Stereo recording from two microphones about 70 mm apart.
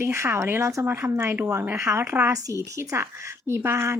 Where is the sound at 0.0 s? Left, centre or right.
Right.